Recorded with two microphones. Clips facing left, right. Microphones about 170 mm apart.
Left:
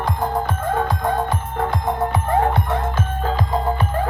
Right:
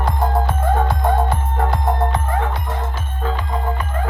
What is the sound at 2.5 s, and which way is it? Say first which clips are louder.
Music: left 5 dB; 60° left (ahead or behind).